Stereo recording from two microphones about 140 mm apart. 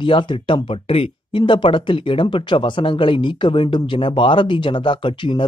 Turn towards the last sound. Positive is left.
turn(degrees=35)  # may be behind; listen again after turning